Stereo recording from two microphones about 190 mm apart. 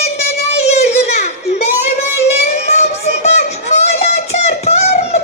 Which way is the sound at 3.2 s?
35° left (ahead or behind).